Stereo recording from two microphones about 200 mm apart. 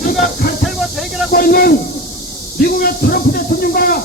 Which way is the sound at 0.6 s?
Centre (ahead or behind).